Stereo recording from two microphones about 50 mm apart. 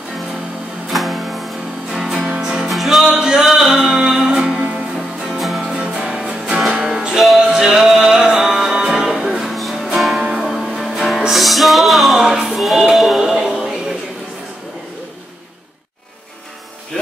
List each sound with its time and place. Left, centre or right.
0.9 s music: centre
1.9 s music: centre
2.7 s music: centre; by 4.8 s right
5.3 s music: centre
10.1 s music: centre
10.4 s music: centre
13.3 s music: centre
16.9 s music: centre